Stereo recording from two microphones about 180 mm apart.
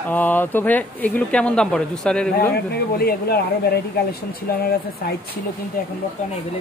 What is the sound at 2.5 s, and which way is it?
Speech, 60° left (ahead or behind).